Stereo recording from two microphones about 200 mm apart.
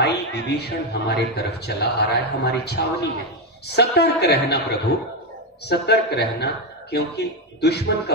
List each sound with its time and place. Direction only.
0.0 s speech: 55° left (ahead or behind)
5.7 s speech: 55° left (ahead or behind)